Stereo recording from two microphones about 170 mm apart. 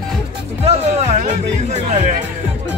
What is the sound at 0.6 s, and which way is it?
Speech, 40° right (ahead or behind).